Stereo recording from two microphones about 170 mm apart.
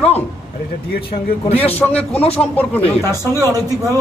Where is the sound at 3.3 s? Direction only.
20° right (ahead or behind).